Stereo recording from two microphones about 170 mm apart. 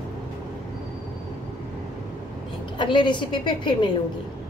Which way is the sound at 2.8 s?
30° left (ahead or behind).